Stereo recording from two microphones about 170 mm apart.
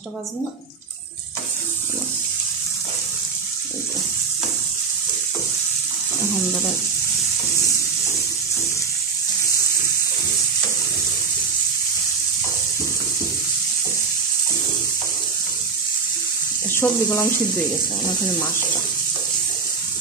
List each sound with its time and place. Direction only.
16.7 s speech: 15° left (ahead or behind)